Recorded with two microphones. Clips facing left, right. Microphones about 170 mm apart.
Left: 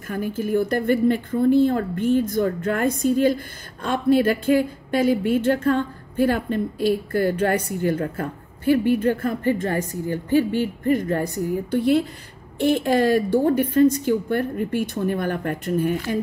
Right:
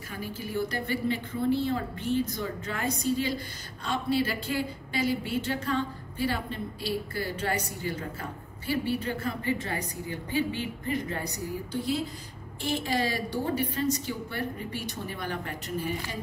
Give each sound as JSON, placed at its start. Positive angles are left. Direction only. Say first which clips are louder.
{"t": 0.1, "sound": "a woman's voice", "louder": "left 11 dB", "side_deg": 50}